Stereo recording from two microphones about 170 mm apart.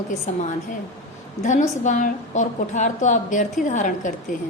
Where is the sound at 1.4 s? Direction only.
45° left (ahead or behind).